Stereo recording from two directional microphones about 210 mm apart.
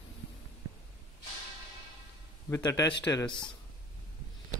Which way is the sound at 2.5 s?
15° left (ahead or behind).